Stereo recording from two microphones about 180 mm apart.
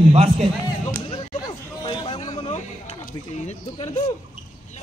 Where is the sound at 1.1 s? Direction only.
25° left (ahead or behind).